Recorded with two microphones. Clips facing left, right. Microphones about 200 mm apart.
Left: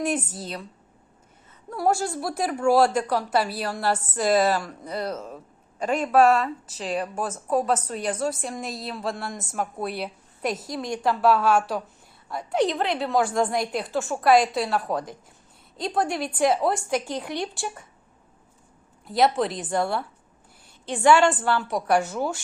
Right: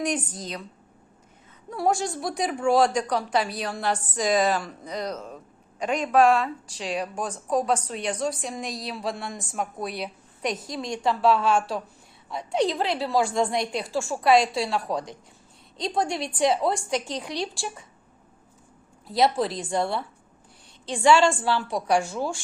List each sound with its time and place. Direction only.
0.0 s a woman's voice: 5° left (ahead or behind)
1.7 s a woman's voice: centre (ahead or behind)
19.0 s a woman's voice: centre (ahead or behind)
21.0 s a woman's voice: 25° right (ahead or behind)
21.4 s a woman's voice: centre (ahead or behind)